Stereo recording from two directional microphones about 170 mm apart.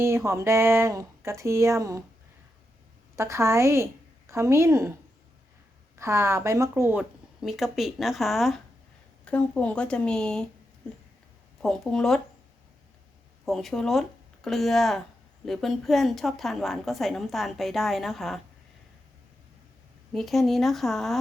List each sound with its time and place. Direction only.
0.0 s speech: 15° right (ahead or behind)
3.2 s speech: 15° right (ahead or behind)
6.0 s speech: 15° right (ahead or behind)
7.4 s a woman's voice: centre (ahead or behind)
11.6 s a woman's voice: 5° left (ahead or behind)
13.4 s a woman's voice: centre (ahead or behind)
20.1 s a woman's voice: centre (ahead or behind)